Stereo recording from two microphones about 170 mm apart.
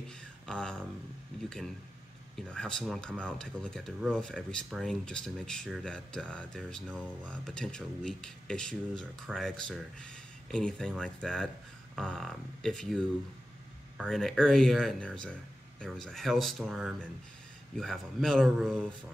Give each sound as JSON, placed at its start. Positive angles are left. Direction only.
{"t": 0.5, "sound": "speech", "side_deg": 5}
{"t": 2.5, "sound": "speech", "side_deg": 5}